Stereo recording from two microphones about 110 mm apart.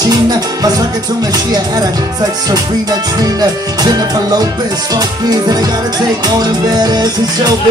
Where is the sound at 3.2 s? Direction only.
35° right (ahead or behind).